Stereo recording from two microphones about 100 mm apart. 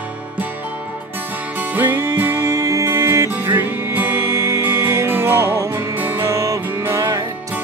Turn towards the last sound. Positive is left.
turn(degrees=-30)  # may be behind; listen again after turning